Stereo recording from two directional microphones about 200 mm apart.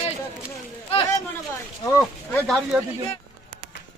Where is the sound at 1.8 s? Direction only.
15° left (ahead or behind).